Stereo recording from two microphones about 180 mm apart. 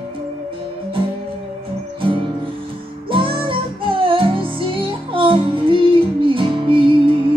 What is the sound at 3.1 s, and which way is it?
Music, 30° right (ahead or behind).